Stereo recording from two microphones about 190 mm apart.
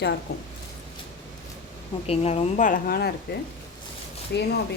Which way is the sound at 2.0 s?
35° left (ahead or behind).